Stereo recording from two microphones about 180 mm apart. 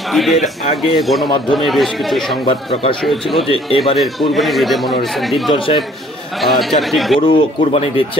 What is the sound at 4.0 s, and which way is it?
Speech, centre (ahead or behind).